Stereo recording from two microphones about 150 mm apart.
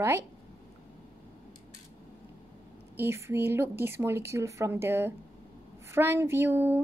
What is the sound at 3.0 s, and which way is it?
Speech, 15° right (ahead or behind).